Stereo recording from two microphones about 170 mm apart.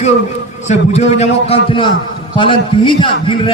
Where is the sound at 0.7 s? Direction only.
40° left (ahead or behind).